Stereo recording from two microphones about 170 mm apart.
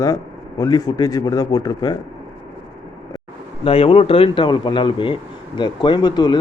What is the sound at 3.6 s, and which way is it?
Speech, 35° left (ahead or behind).